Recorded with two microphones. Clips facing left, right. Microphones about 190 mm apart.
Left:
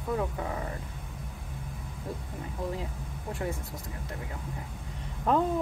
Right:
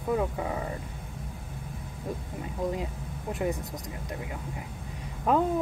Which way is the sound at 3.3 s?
20° right (ahead or behind).